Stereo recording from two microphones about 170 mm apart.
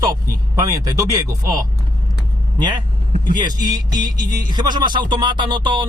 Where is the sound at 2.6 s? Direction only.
25° right (ahead or behind).